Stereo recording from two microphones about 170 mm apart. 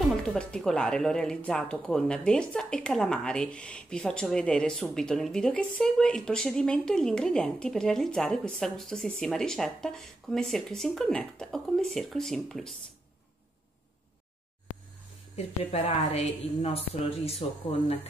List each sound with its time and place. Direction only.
0.0 s speech: centre (ahead or behind)
15.3 s a woman's voice: 35° left (ahead or behind)